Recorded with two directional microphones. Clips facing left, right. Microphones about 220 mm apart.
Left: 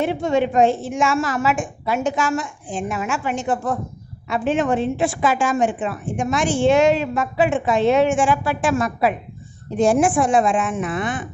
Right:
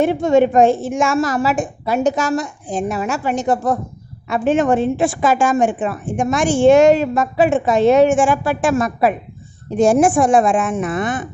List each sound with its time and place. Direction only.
0.0 s a woman's voice: 45° right (ahead or behind)